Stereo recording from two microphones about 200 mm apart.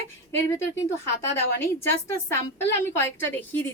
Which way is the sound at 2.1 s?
15° left (ahead or behind).